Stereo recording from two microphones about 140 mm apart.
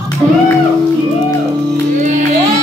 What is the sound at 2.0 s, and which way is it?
Music, 60° right (ahead or behind).